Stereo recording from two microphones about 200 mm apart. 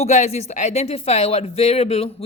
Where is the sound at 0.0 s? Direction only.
35° left (ahead or behind).